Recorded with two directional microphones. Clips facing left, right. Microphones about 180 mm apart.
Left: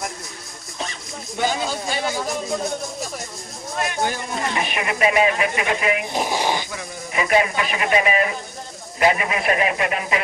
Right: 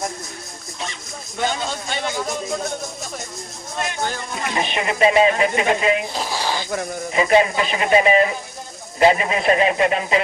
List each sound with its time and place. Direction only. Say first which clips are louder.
1.4 s speech: left 1 dB; 5° left (ahead or behind)
4.6 s speech: right 5 dB; 25° right (ahead or behind)
6.1 s speech: left 2 dB; 20° left (ahead or behind)
7.1 s speech: right 3 dB; 25° right (ahead or behind)